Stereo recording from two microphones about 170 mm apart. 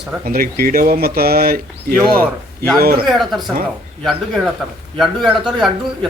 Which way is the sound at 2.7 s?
60° right (ahead or behind).